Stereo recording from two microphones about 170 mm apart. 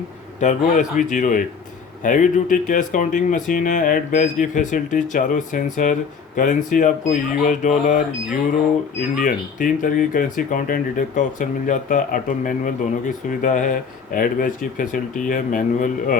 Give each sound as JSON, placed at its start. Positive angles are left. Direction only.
{"t": 0.3, "sound": "speech", "side_deg": 45}